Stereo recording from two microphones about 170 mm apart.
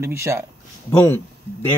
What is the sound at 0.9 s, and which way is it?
Speech, 10° left (ahead or behind).